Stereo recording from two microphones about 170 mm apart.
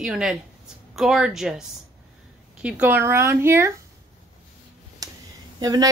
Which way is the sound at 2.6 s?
10° right (ahead or behind).